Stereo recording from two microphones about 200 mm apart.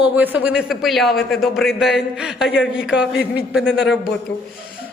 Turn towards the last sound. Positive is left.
turn(degrees=65)  # may be behind; listen again after turning